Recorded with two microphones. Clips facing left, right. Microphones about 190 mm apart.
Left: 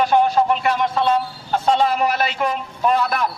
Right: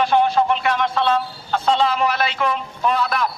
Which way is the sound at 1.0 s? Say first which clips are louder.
Left 1 dB; 10° left (ahead or behind).